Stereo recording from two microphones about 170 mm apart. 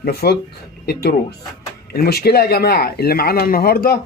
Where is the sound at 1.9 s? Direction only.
65° left (ahead or behind).